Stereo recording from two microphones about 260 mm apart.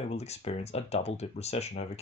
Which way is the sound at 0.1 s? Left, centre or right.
Left.